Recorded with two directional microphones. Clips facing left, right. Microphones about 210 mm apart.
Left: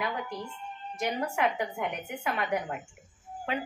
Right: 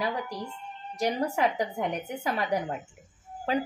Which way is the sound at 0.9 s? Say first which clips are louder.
Right 3 dB; 35° right (ahead or behind).